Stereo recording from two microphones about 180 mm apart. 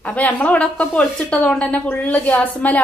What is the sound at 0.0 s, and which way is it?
A woman's voice, 10° left (ahead or behind).